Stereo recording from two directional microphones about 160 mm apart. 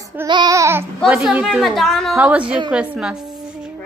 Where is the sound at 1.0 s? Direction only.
5° right (ahead or behind).